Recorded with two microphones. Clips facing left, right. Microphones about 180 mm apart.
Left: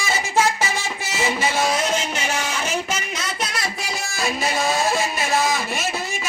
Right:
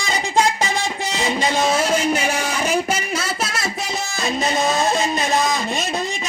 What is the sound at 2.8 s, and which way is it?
Music, 30° right (ahead or behind).